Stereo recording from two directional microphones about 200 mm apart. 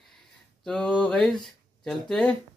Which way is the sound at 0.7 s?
5° left (ahead or behind).